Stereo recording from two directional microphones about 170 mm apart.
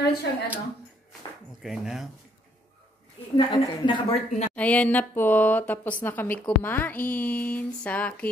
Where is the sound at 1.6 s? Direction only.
Centre (ahead or behind).